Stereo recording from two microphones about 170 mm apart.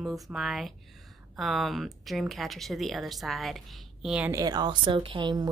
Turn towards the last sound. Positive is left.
turn(degrees=-25)  # may be behind; listen again after turning